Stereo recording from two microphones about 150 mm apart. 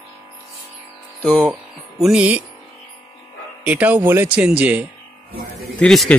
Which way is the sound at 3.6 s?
10° right (ahead or behind).